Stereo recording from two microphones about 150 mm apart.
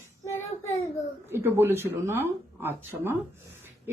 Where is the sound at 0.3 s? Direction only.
15° left (ahead or behind).